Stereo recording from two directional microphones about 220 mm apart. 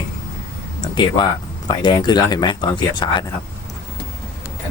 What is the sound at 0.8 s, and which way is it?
Speech, 20° left (ahead or behind).